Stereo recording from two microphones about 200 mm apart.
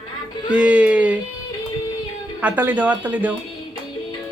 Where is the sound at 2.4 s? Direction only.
5° right (ahead or behind).